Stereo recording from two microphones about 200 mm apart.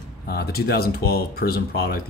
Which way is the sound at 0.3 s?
50° left (ahead or behind).